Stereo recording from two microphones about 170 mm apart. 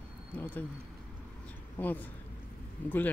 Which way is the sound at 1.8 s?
10° left (ahead or behind).